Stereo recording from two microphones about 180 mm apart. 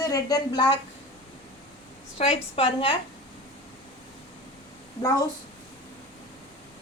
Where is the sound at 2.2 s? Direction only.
30° left (ahead or behind).